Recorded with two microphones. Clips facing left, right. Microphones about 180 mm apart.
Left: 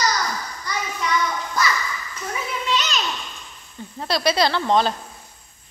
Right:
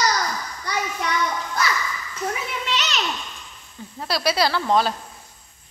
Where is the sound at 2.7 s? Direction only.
75° right (ahead or behind).